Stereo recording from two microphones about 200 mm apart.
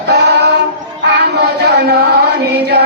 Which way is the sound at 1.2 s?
60° right (ahead or behind).